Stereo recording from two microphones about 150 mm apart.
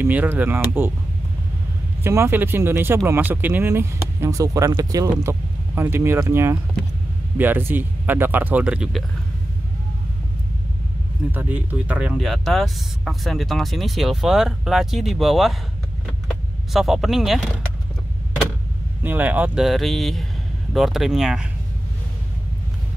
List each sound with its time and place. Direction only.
0.0 s speech: 10° right (ahead or behind)
2.0 s speech: 15° right (ahead or behind)
11.3 s speech: 10° right (ahead or behind)
19.0 s speech: 10° right (ahead or behind)